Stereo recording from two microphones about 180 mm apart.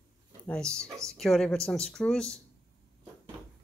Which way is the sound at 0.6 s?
15° right (ahead or behind).